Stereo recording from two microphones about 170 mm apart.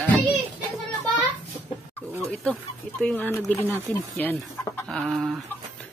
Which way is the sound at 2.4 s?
5° left (ahead or behind).